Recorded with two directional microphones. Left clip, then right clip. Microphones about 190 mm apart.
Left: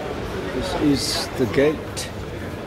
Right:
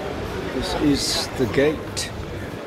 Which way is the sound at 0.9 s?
5° left (ahead or behind).